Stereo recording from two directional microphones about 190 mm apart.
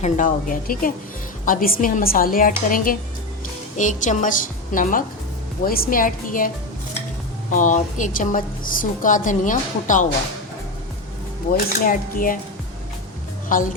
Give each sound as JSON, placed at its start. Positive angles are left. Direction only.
{"t": 0.0, "sound": "a woman's voice", "side_deg": 45}
{"t": 7.5, "sound": "a woman's voice", "side_deg": 40}
{"t": 11.5, "sound": "a woman's voice", "side_deg": 45}
{"t": 13.5, "sound": "a woman's voice", "side_deg": 45}